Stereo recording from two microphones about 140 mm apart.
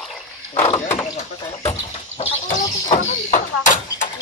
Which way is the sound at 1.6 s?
45° left (ahead or behind).